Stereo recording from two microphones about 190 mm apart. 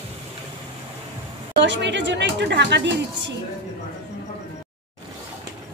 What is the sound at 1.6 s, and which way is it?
Speech, 70° right (ahead or behind).